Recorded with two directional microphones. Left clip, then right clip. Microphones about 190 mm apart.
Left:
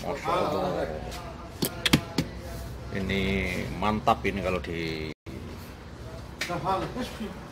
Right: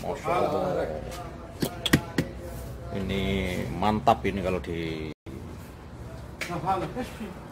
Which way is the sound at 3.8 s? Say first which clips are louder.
Right 2 dB; 20° right (ahead or behind).